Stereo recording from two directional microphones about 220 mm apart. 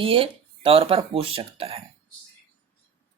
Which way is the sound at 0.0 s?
25° right (ahead or behind).